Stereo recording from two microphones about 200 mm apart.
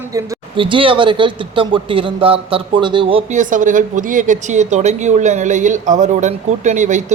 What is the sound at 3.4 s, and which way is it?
A woman's voice, 40° right (ahead or behind).